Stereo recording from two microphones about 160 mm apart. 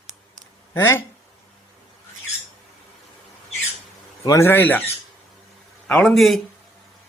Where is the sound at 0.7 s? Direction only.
15° left (ahead or behind).